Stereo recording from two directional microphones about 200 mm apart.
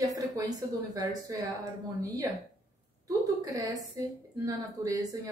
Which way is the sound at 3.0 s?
15° right (ahead or behind).